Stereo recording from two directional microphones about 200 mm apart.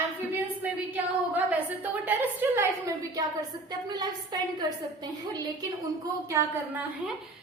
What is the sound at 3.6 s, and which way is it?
Speech, 20° right (ahead or behind).